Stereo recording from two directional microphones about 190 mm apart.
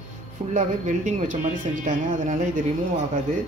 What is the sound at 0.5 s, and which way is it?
Speech, 40° right (ahead or behind).